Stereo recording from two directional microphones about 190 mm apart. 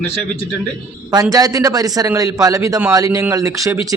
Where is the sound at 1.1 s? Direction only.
20° right (ahead or behind).